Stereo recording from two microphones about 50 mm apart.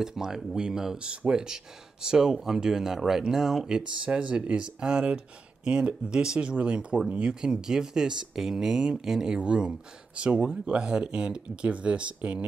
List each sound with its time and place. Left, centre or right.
0.0 s speech: centre
3.6 s speech: centre